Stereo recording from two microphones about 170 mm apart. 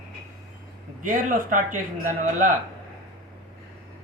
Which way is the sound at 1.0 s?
50° right (ahead or behind).